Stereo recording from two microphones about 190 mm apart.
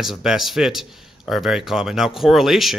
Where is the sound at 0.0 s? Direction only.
Centre (ahead or behind).